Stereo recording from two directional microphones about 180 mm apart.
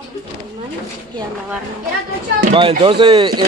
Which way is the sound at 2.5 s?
30° right (ahead or behind).